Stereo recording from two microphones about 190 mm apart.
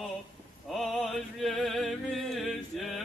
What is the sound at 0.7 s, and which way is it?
Music, centre (ahead or behind).